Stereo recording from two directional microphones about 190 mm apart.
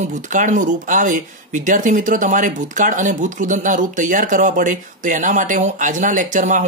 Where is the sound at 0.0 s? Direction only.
40° right (ahead or behind).